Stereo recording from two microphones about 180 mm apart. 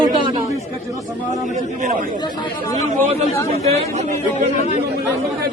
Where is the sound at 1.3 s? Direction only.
40° right (ahead or behind).